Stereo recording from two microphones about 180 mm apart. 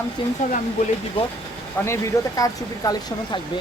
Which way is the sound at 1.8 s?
15° left (ahead or behind).